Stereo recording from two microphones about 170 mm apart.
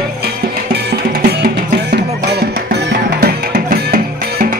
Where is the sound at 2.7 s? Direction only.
70° right (ahead or behind).